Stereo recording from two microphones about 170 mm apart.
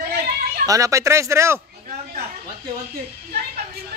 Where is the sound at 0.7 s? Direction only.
20° right (ahead or behind).